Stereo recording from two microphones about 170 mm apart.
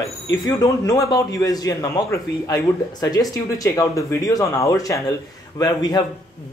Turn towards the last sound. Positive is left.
turn(degrees=25)  # may be behind; listen again after turning